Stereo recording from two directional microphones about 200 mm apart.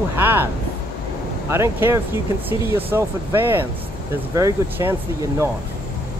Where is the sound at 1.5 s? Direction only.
15° right (ahead or behind).